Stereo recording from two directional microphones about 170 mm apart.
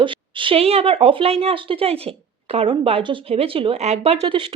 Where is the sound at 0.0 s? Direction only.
30° right (ahead or behind).